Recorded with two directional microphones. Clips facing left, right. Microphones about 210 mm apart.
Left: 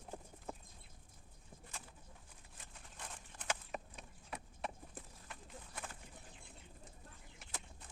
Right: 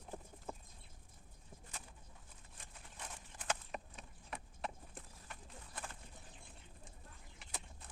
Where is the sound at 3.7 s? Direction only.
Centre (ahead or behind).